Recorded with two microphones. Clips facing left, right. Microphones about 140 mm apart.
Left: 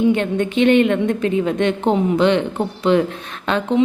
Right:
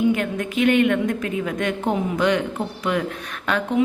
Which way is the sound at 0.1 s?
30° left (ahead or behind).